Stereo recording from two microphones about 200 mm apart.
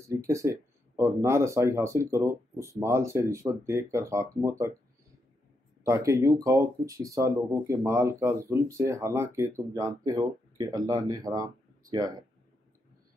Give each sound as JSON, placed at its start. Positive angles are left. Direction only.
{"t": 0.3, "sound": "speech", "side_deg": -15}
{"t": 5.9, "sound": "speech", "side_deg": -15}